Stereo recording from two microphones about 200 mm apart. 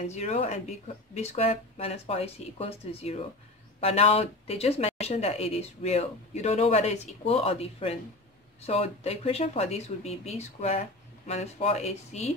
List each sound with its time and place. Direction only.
0.0 s a woman's voice: 35° left (ahead or behind)